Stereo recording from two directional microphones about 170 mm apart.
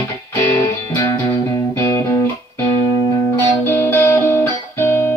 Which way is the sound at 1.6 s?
15° left (ahead or behind).